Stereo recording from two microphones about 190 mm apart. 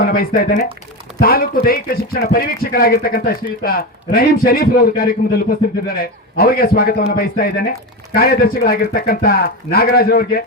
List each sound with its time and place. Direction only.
0.0 s speech: 50° left (ahead or behind)